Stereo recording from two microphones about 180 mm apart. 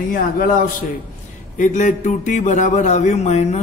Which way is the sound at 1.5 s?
45° left (ahead or behind).